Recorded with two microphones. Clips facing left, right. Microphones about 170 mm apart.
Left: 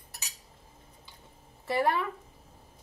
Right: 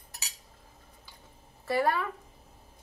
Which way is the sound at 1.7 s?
20° left (ahead or behind).